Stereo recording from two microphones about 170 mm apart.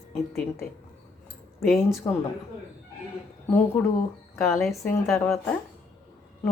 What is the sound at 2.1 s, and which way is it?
Speech, 20° left (ahead or behind).